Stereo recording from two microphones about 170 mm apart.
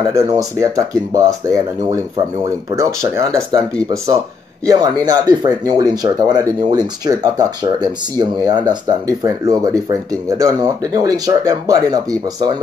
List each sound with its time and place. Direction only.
0.1 s speech: 20° right (ahead or behind)
4.6 s speech: 20° right (ahead or behind)